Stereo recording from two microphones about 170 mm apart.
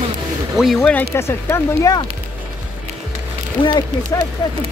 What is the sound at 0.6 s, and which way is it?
Speech, centre (ahead or behind).